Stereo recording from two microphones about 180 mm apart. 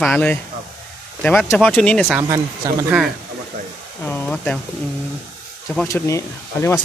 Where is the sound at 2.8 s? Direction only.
5° right (ahead or behind).